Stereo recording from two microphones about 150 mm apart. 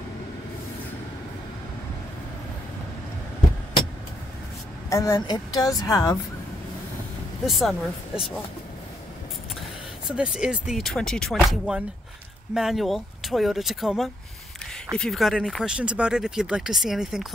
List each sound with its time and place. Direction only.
4.8 s speech: 20° left (ahead or behind)
7.4 s speech: centre (ahead or behind)
10.0 s speech: 5° right (ahead or behind)